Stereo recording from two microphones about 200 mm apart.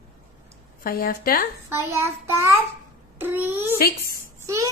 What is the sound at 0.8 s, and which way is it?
Speech, 45° left (ahead or behind).